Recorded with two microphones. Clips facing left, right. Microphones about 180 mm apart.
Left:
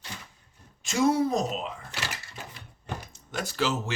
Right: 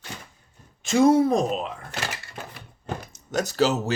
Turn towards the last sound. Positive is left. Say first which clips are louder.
# right 6 dB
turn(degrees=-40)  # may be behind; listen again after turning